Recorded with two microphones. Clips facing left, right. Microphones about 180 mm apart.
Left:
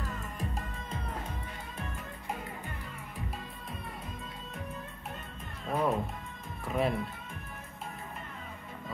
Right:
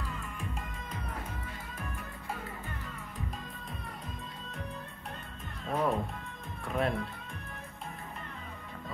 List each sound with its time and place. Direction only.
0.0 s music: 40° left (ahead or behind)
5.7 s music: centre (ahead or behind)
6.6 s speech: centre (ahead or behind)